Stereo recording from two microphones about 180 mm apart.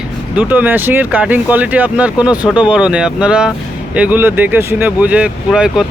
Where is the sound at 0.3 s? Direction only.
10° right (ahead or behind).